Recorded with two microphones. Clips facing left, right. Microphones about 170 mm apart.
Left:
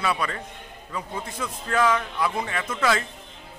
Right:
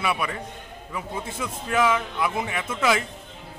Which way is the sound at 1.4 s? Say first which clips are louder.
Even; 10° right (ahead or behind).